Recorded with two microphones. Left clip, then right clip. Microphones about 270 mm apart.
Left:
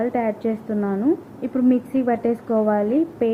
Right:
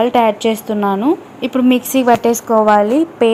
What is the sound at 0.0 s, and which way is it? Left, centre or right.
Speech, centre.